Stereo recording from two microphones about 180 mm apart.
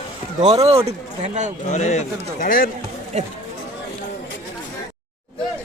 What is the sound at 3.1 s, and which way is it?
Speech, 40° right (ahead or behind).